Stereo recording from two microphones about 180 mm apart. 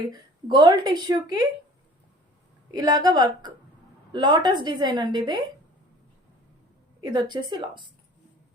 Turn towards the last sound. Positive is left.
turn(degrees=-25)  # may be behind; listen again after turning